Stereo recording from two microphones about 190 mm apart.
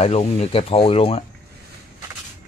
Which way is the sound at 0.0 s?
35° left (ahead or behind).